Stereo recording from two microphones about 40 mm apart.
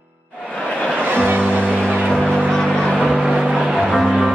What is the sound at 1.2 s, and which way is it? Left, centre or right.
Music, right.